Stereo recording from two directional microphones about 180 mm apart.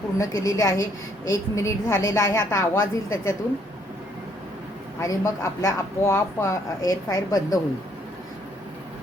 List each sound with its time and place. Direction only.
0.2 s a woman's voice: 15° left (ahead or behind)
4.9 s a woman's voice: 15° left (ahead or behind)